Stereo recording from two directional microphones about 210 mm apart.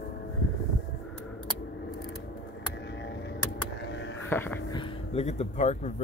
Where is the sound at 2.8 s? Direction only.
55° left (ahead or behind).